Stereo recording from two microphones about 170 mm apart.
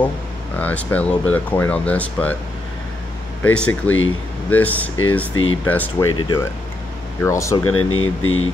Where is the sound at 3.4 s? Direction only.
5° left (ahead or behind).